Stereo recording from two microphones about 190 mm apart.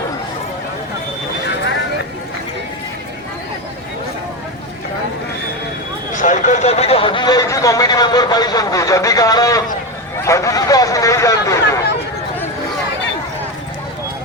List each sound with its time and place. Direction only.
6.1 s speech: 40° left (ahead or behind); by 9.6 s 20° left (ahead or behind)
10.2 s vehicle: 15° left (ahead or behind)